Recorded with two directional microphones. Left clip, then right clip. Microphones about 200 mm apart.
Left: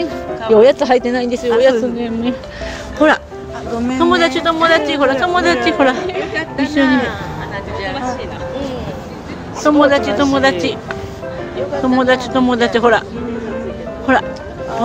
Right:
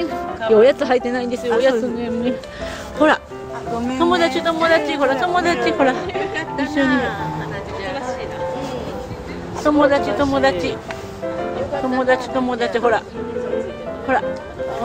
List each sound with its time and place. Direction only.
0.5 s a man's voice: centre (ahead or behind)
9.6 s a woman's voice: 10° left (ahead or behind)
11.8 s a woman's voice: 10° left (ahead or behind)
14.1 s a woman's voice: 15° left (ahead or behind)